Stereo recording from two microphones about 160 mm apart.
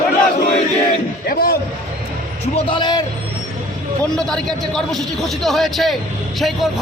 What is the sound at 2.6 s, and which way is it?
Speech, 30° left (ahead or behind).